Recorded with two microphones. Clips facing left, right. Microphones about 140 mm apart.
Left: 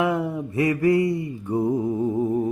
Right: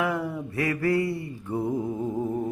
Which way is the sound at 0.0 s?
20° left (ahead or behind).